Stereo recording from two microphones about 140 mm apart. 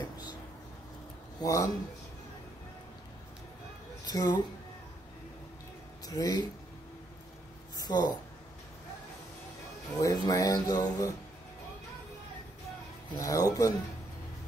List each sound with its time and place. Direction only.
1.4 s speech: 25° left (ahead or behind)
4.0 s a woman's voice: 30° left (ahead or behind)
6.0 s speech: 25° left (ahead or behind)
7.7 s speech: 30° left (ahead or behind)
9.9 s speech: 25° left (ahead or behind)
13.1 s speech: 25° left (ahead or behind)